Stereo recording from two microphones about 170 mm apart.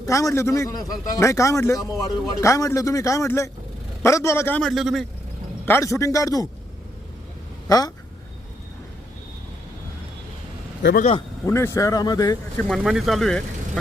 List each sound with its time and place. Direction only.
0.0 s a man's voice: 20° left (ahead or behind); by 5.0 s centre (ahead or behind)
5.6 s speech: 15° left (ahead or behind)
7.7 s speech: 20° left (ahead or behind)
10.8 s a man's voice: 90° left
11.4 s speech: 15° left (ahead or behind)
12.6 s speech: centre (ahead or behind)